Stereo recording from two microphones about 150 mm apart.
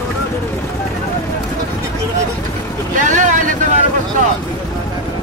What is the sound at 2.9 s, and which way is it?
Vehicle, 55° right (ahead or behind).